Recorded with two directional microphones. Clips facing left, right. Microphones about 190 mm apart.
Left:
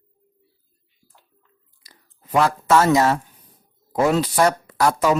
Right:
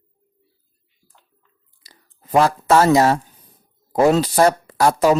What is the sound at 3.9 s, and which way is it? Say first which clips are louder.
Speech: right 4 dB; 35° right (ahead or behind).